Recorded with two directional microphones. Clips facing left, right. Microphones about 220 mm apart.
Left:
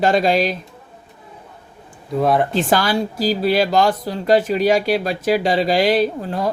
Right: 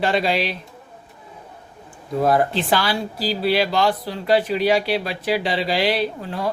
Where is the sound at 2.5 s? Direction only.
45° left (ahead or behind).